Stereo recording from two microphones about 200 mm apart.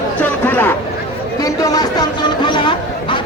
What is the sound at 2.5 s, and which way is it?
Chatter, 25° left (ahead or behind).